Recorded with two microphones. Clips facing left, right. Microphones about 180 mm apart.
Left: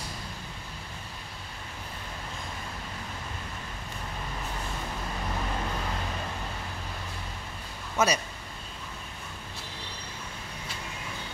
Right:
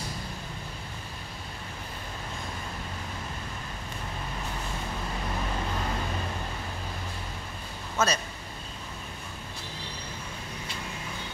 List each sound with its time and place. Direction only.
8.0 s speech: 15° left (ahead or behind)